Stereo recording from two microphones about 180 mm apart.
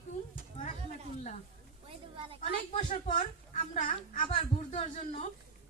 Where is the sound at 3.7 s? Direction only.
30° left (ahead or behind).